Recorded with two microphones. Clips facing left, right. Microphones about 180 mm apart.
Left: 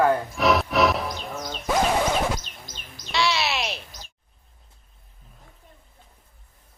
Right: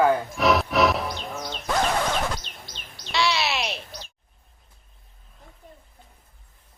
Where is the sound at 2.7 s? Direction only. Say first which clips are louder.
Left 1 dB; 45° left (ahead or behind).